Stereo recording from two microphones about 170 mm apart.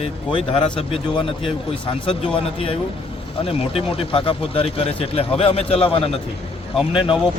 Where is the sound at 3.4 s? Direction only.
35° left (ahead or behind).